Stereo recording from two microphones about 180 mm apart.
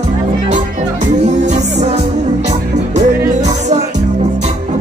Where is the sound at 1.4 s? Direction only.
40° right (ahead or behind).